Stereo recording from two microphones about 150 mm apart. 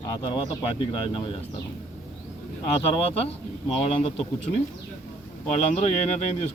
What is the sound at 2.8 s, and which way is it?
Speech, 40° left (ahead or behind).